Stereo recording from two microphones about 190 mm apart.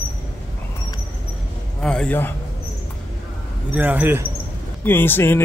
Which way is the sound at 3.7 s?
10° right (ahead or behind).